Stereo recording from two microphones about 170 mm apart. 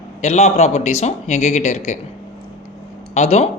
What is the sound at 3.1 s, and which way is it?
Speech, 40° left (ahead or behind).